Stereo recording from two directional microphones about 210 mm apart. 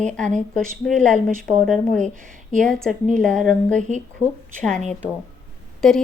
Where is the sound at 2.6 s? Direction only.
5° left (ahead or behind).